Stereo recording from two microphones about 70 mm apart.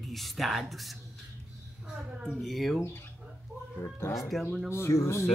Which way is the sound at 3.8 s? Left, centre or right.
Left.